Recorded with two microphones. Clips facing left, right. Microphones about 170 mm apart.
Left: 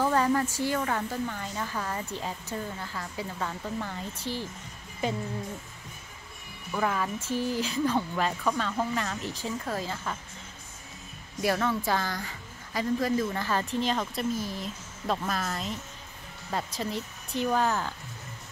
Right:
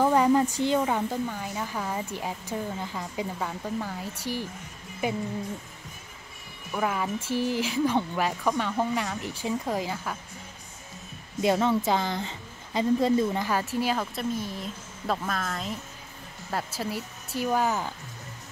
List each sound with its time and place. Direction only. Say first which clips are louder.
0.0 s a sound: right 4 dB; 15° right (ahead or behind)
0.6 s a woman's voice: right 4 dB; 20° right (ahead or behind)
6.7 s a woman's voice: right 1 dB; 10° right (ahead or behind)
11.4 s a woman's voice: right 4 dB; 20° right (ahead or behind)